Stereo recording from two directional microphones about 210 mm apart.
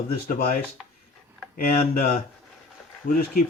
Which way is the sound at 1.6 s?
45° left (ahead or behind).